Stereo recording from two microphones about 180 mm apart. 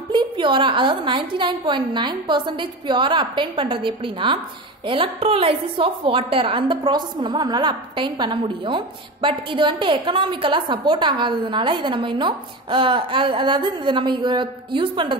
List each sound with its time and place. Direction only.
0.1 s a woman's voice: 25° right (ahead or behind)